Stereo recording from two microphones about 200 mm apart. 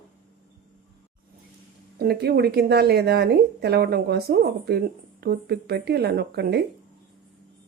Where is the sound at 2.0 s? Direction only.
55° right (ahead or behind).